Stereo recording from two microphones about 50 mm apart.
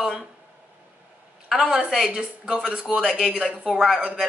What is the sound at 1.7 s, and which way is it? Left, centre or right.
A woman's voice, centre.